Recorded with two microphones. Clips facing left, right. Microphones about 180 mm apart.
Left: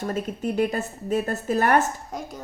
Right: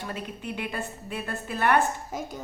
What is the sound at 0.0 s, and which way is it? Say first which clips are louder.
A woman's voice: left 8 dB; 45° left (ahead or behind).